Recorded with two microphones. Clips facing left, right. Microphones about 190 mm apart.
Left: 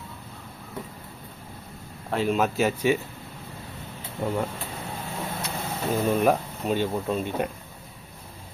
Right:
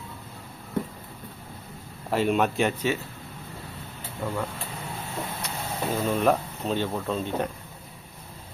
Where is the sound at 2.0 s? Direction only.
Centre (ahead or behind).